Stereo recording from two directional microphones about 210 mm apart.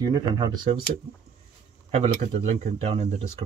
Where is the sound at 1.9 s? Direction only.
30° right (ahead or behind).